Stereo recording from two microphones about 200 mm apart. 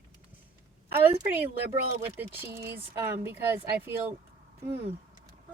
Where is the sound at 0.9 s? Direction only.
10° right (ahead or behind).